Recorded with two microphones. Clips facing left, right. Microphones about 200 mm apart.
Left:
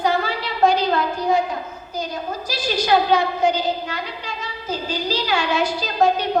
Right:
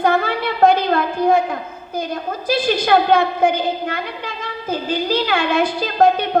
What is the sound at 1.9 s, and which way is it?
A woman's voice, 55° right (ahead or behind).